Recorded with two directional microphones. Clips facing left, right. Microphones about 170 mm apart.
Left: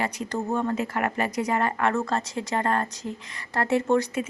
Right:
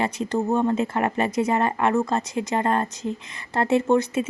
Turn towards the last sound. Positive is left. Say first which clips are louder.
# right 3 dB
turn(degrees=-20)  # may be behind; listen again after turning